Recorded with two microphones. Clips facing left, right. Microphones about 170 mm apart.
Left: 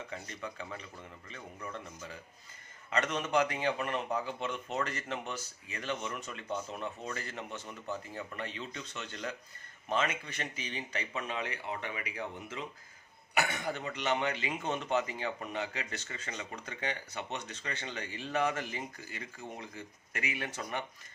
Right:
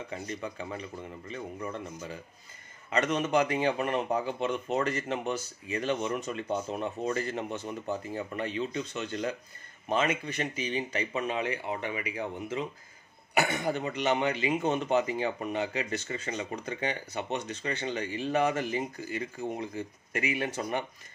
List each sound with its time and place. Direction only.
0.1 s a man's voice: 20° right (ahead or behind)
2.9 s a man's voice: 15° right (ahead or behind)